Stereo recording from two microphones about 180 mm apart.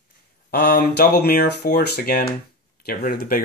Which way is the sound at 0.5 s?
65° left (ahead or behind).